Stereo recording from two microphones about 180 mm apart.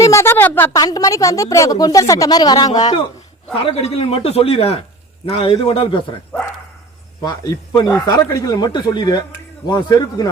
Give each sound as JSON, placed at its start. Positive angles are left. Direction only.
{"t": 0.0, "sound": "speech", "side_deg": 15}
{"t": 0.8, "sound": "speech", "side_deg": 20}
{"t": 3.5, "sound": "a man's voice", "side_deg": 30}
{"t": 7.2, "sound": "speech", "side_deg": 20}